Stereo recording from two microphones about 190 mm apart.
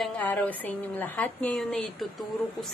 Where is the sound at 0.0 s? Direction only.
10° left (ahead or behind).